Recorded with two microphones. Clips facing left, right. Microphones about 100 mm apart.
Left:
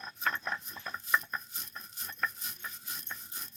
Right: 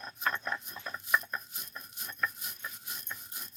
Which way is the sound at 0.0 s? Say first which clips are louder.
Even; 10° right (ahead or behind).